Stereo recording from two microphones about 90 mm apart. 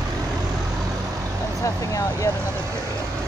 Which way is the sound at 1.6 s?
35° left (ahead or behind).